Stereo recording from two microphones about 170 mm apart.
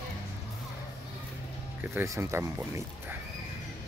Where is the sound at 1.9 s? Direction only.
15° right (ahead or behind).